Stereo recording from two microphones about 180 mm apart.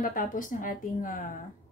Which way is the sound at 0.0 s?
45° left (ahead or behind).